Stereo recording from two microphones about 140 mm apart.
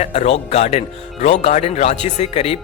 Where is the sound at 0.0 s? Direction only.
55° left (ahead or behind).